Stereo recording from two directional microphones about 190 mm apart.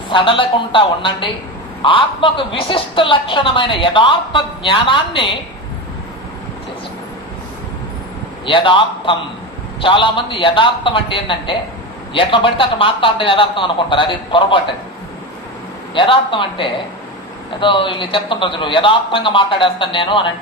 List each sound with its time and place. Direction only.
0.1 s a woman's voice: 25° left (ahead or behind)
8.5 s a woman's voice: 25° left (ahead or behind)
15.9 s a woman's voice: 25° left (ahead or behind)